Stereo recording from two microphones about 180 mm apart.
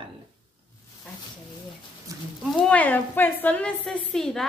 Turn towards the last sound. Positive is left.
turn(degrees=0)  # may be behind; listen again after turning